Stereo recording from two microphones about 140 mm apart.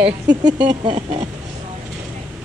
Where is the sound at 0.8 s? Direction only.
40° right (ahead or behind).